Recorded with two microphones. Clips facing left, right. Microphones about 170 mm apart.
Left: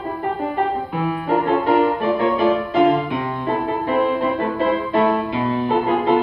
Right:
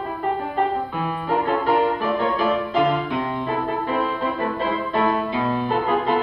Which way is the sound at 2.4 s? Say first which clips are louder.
Left 5 dB; 10° left (ahead or behind).